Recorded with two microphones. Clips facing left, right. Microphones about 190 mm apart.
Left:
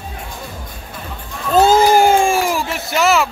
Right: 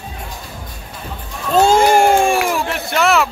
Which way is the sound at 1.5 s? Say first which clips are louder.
Even; centre (ahead or behind).